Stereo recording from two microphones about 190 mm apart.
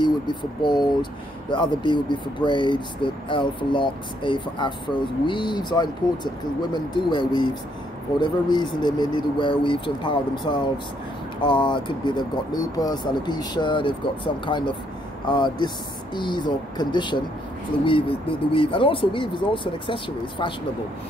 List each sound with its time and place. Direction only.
0.0 s speech: 25° left (ahead or behind)